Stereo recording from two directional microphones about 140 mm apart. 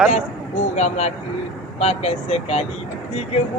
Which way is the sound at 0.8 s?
55° left (ahead or behind).